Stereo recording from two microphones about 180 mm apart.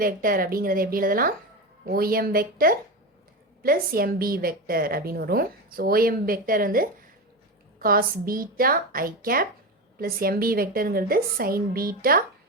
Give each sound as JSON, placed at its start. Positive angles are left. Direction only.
{"t": 0.0, "sound": "a woman's voice", "side_deg": -50}